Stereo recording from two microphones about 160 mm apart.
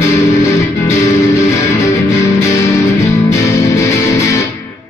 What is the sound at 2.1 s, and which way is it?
Music, 20° left (ahead or behind).